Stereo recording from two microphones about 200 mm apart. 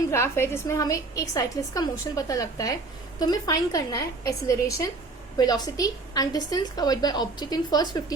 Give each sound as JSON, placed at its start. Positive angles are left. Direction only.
{"t": 0.1, "sound": "a woman's voice", "side_deg": 10}